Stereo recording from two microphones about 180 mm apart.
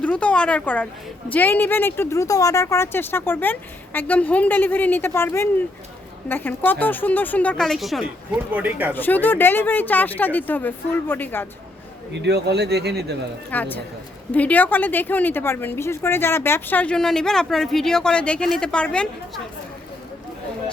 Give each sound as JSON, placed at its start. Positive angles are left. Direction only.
{"t": 0.0, "sound": "a woman's voice", "side_deg": 5}
{"t": 8.9, "sound": "a woman's voice", "side_deg": 10}
{"t": 12.1, "sound": "speech", "side_deg": -70}
{"t": 13.5, "sound": "a woman's voice", "side_deg": 10}